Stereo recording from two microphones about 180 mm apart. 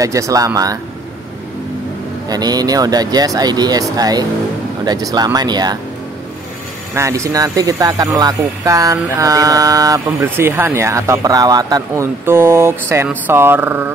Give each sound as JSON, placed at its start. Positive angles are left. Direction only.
{"t": 0.0, "sound": "speech", "side_deg": -20}
{"t": 2.2, "sound": "speech", "side_deg": -20}
{"t": 7.0, "sound": "speech", "side_deg": -15}